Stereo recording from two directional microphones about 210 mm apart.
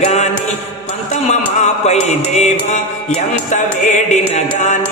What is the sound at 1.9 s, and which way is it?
Music, 30° left (ahead or behind).